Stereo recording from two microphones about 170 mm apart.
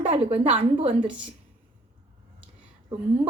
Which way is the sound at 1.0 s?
5° right (ahead or behind).